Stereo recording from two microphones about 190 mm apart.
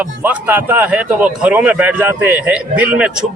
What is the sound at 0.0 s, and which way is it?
Speech, 10° right (ahead or behind).